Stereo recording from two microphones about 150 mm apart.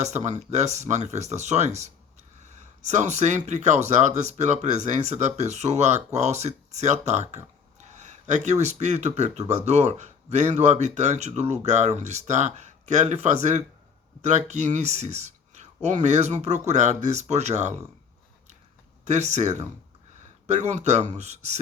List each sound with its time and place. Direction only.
0.0 s speech: 50° right (ahead or behind)
19.0 s speech: 50° right (ahead or behind)